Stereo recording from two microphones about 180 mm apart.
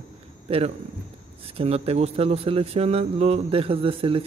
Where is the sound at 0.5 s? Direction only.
35° right (ahead or behind).